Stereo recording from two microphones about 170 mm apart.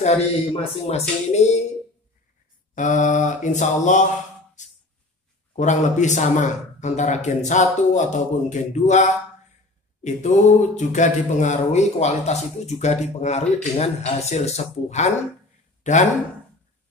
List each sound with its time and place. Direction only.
0.0 s speech: 40° left (ahead or behind)
2.7 s speech: 45° left (ahead or behind)
4.6 s a sound: 45° left (ahead or behind)
5.6 s speech: 45° left (ahead or behind)